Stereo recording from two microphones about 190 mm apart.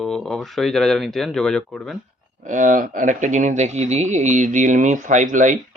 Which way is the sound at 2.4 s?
45° right (ahead or behind).